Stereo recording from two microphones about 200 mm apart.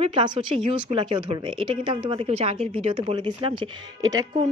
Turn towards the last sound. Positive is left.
turn(degrees=-20)  # may be behind; listen again after turning